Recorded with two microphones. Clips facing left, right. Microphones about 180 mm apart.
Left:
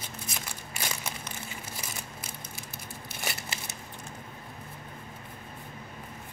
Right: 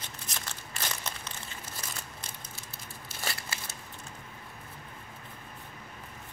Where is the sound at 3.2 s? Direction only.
15° left (ahead or behind).